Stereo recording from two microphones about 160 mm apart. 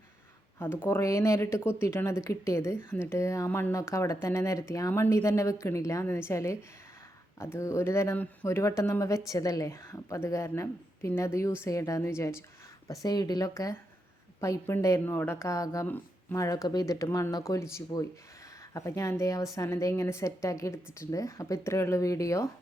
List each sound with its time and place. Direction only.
0.6 s a woman's voice: 15° left (ahead or behind)